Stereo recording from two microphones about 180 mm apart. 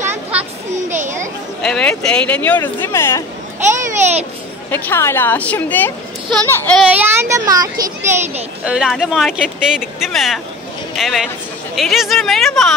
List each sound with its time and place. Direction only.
0.1 s a sound: 10° right (ahead or behind)
1.6 s speech: 5° left (ahead or behind)
3.6 s a child's voice: 40° right (ahead or behind)
4.6 s speech: 10° left (ahead or behind)
6.9 s a child's voice: 10° right (ahead or behind)
8.6 s speech: centre (ahead or behind)